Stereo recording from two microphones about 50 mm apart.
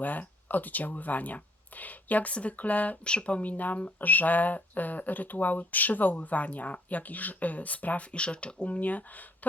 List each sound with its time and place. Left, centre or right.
0.0 s speech: left